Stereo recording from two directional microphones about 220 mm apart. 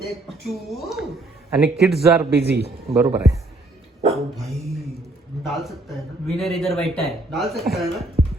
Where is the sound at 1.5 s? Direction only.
5° right (ahead or behind).